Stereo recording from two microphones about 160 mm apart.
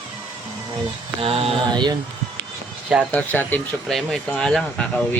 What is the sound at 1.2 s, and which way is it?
Speech, 35° right (ahead or behind).